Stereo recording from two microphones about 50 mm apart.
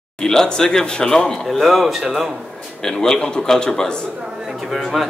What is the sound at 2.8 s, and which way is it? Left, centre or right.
A man's voice, centre.